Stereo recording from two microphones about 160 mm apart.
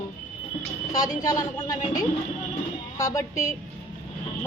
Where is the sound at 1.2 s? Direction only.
25° left (ahead or behind).